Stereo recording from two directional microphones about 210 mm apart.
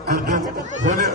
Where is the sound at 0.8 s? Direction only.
35° right (ahead or behind).